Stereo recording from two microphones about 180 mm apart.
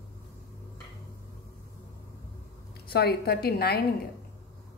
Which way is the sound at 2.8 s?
60° left (ahead or behind).